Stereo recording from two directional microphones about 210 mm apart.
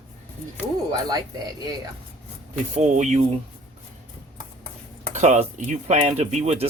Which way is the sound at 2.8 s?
35° right (ahead or behind).